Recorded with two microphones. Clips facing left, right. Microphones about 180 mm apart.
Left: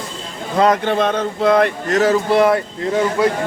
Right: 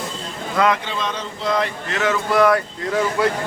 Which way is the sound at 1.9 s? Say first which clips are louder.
Left 4 dB; 35° left (ahead or behind).